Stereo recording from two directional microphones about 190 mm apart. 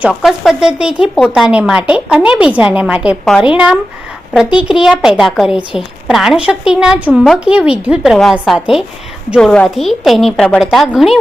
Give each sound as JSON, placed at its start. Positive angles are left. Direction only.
{"t": 0.0, "sound": "a woman's voice", "side_deg": 0}